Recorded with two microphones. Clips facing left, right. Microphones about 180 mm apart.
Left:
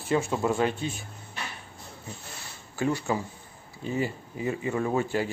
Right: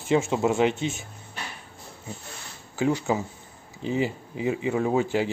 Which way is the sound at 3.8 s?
15° right (ahead or behind).